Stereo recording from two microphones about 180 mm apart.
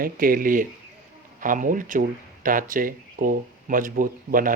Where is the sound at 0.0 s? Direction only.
50° right (ahead or behind).